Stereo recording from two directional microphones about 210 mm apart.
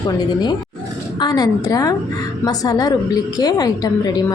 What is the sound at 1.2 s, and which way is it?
A woman's voice, 20° left (ahead or behind).